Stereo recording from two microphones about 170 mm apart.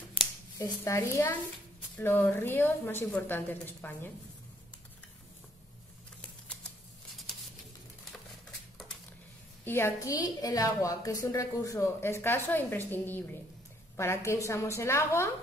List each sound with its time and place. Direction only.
0.2 s a woman's voice: 20° left (ahead or behind)
9.7 s a woman's voice: 15° left (ahead or behind)